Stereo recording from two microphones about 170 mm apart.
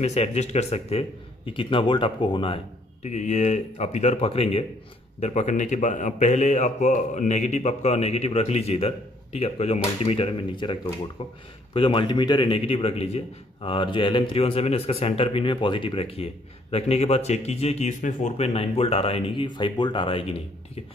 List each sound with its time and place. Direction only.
0.0 s a man's voice: 40° left (ahead or behind)